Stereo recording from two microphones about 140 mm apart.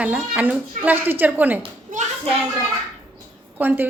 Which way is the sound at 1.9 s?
65° right (ahead or behind).